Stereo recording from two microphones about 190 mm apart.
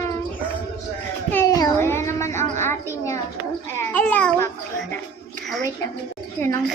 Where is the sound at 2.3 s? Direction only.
40° right (ahead or behind).